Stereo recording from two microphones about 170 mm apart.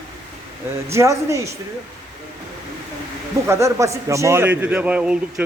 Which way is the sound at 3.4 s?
15° right (ahead or behind).